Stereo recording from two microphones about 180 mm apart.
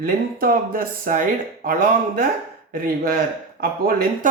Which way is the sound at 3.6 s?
55° right (ahead or behind).